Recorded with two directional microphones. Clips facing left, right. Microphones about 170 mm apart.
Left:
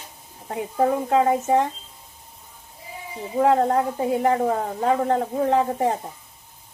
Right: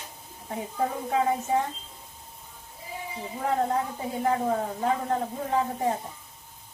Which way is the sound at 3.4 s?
75° left (ahead or behind).